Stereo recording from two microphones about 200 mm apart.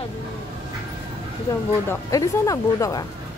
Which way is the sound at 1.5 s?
15° left (ahead or behind).